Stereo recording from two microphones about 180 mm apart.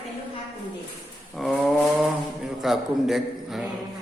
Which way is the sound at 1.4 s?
Centre (ahead or behind).